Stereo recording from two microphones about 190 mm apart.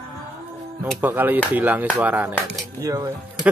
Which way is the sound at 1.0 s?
10° right (ahead or behind).